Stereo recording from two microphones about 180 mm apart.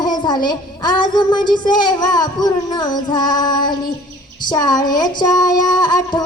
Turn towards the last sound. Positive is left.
turn(degrees=25)  # may be behind; listen again after turning